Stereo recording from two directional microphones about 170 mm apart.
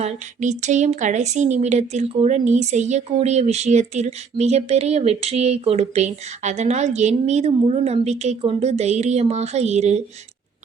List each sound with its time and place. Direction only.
0.0 s speech: 45° right (ahead or behind)